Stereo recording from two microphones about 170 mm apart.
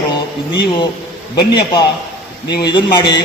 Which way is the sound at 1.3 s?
25° left (ahead or behind).